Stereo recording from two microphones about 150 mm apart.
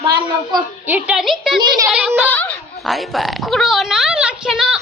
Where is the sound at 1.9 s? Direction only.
5° right (ahead or behind).